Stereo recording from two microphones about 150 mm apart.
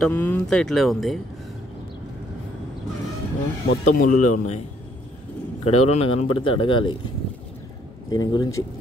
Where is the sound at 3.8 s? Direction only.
60° left (ahead or behind).